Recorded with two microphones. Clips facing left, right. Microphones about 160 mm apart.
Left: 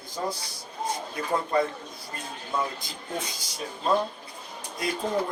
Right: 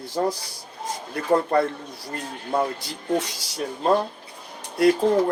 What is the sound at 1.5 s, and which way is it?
Speech, 65° right (ahead or behind).